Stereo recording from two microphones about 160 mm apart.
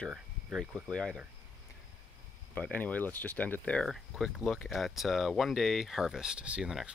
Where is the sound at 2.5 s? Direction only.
10° left (ahead or behind).